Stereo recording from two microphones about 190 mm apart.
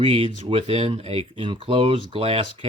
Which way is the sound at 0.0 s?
30° right (ahead or behind).